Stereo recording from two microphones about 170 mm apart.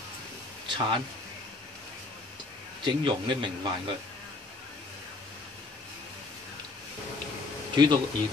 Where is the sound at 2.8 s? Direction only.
30° right (ahead or behind).